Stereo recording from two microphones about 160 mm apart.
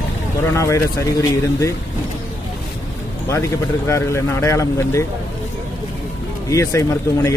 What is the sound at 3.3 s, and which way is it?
Speech, 20° left (ahead or behind).